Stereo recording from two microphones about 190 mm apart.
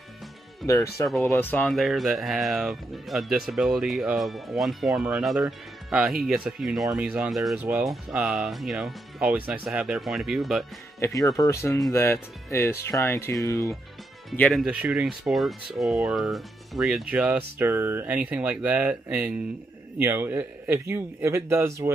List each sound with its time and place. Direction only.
0.6 s speech: centre (ahead or behind)
1.2 s speech: 10° left (ahead or behind)
11.0 s speech: 15° left (ahead or behind)
14.3 s speech: 5° left (ahead or behind); by 21.9 s 15° right (ahead or behind)